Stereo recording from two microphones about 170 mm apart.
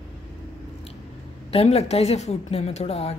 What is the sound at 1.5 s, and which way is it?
A woman's voice, 40° left (ahead or behind).